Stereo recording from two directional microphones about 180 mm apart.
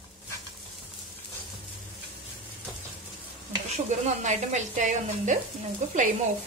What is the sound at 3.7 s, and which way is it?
Speech, 40° right (ahead or behind).